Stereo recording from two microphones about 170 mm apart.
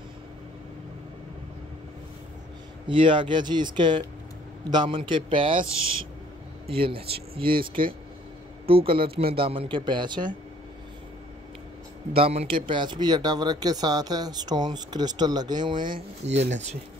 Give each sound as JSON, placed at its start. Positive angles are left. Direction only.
{"t": 2.9, "sound": "a man's voice", "side_deg": -30}
{"t": 6.7, "sound": "speech", "side_deg": -30}
{"t": 8.6, "sound": "a man's voice", "side_deg": -30}
{"t": 12.1, "sound": "a man's voice", "side_deg": -35}
{"t": 16.2, "sound": "speech", "side_deg": -40}